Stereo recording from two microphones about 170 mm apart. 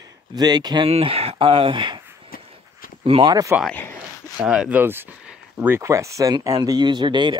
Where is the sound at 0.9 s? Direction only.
35° right (ahead or behind).